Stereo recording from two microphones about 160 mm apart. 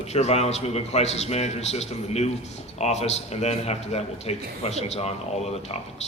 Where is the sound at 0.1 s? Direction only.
40° left (ahead or behind).